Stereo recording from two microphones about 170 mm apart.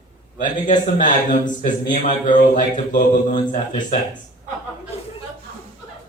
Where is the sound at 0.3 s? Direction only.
50° left (ahead or behind).